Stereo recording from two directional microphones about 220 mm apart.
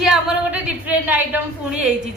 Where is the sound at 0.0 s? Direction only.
5° right (ahead or behind).